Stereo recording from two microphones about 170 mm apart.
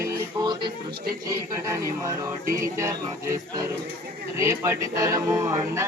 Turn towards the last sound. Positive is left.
turn(degrees=-20)  # may be behind; listen again after turning